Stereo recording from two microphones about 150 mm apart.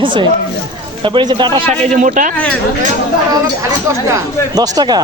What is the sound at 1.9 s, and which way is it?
Speech, 55° right (ahead or behind).